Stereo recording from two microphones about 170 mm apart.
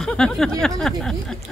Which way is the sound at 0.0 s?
5° left (ahead or behind).